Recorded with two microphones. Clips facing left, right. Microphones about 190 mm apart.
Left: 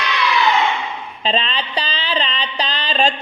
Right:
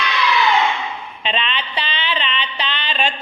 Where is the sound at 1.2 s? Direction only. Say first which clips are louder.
Left 3 dB; 35° left (ahead or behind).